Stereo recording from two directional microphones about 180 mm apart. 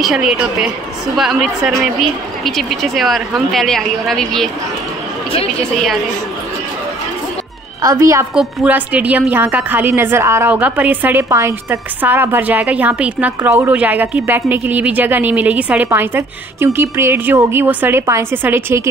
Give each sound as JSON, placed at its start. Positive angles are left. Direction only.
{"t": 0.0, "sound": "speech", "side_deg": 0}
{"t": 7.8, "sound": "a woman's voice", "side_deg": -15}
{"t": 8.4, "sound": "a woman's voice", "side_deg": -5}